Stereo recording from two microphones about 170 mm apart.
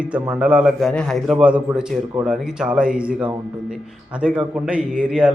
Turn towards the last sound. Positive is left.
turn(degrees=-5)  # may be behind; listen again after turning